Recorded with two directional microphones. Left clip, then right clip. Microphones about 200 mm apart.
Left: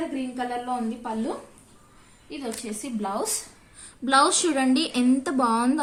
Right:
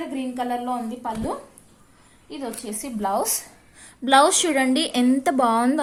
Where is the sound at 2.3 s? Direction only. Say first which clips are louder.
Right 1 dB; 30° right (ahead or behind).